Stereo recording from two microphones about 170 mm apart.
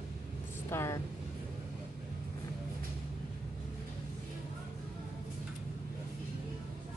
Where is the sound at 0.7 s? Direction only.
15° left (ahead or behind).